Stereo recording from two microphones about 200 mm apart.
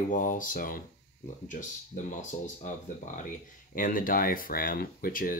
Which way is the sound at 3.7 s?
45° left (ahead or behind).